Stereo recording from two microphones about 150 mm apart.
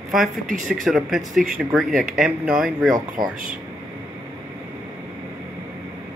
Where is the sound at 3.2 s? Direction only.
25° right (ahead or behind).